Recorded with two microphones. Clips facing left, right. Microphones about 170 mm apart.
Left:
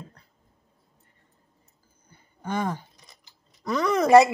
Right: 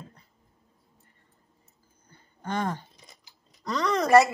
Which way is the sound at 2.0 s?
5° left (ahead or behind).